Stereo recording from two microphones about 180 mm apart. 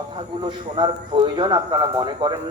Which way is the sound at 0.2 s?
25° right (ahead or behind).